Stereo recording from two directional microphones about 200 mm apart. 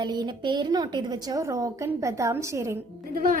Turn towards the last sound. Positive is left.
turn(degrees=-45)  # may be behind; listen again after turning